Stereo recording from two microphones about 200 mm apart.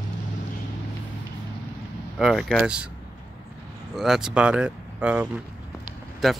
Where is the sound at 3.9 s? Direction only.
Centre (ahead or behind).